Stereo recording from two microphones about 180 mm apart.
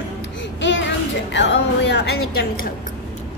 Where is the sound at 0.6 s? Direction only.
90° left; by 2.7 s 60° left (ahead or behind).